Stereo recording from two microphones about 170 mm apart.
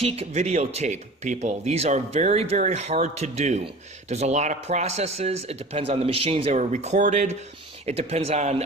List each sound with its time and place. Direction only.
0.0 s speech: 40° right (ahead or behind)